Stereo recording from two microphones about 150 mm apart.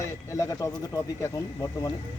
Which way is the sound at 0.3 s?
20° left (ahead or behind).